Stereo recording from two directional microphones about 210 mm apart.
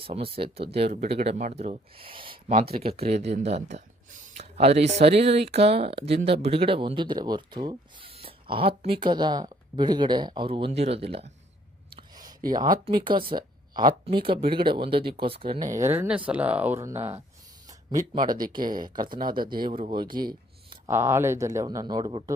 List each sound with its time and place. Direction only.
0.3 s speech: 25° right (ahead or behind)
11.9 s a sound: 20° right (ahead or behind)
12.5 s speech: 20° right (ahead or behind)
15.7 s speech: 10° right (ahead or behind)
18.1 s speech: 20° right (ahead or behind)
20.8 s speech: 10° right (ahead or behind)